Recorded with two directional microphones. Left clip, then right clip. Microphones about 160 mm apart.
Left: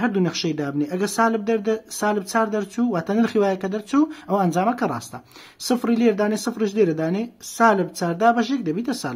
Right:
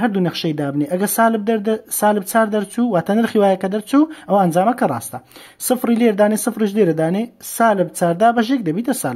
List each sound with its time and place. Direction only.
0.0 s speech: 30° right (ahead or behind)